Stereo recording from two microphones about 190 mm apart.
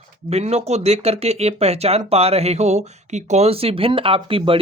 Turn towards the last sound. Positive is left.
turn(degrees=-30)  # may be behind; listen again after turning